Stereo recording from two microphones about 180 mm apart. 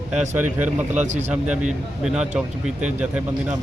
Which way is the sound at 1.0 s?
40° right (ahead or behind).